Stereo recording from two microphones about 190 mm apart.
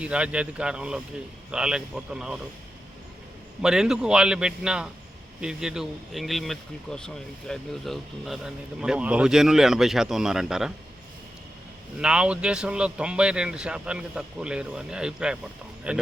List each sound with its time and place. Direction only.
0.0 s speech: 5° right (ahead or behind)
3.6 s speech: 5° right (ahead or behind)
11.9 s speech: 5° right (ahead or behind)